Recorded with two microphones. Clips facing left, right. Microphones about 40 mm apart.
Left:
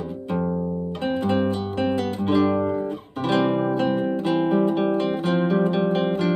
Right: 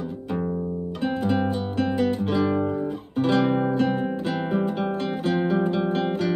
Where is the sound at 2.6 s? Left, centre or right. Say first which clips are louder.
Left 2 dB; centre.